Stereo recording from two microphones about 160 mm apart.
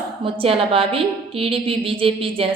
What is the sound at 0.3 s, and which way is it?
A woman's voice, 35° right (ahead or behind).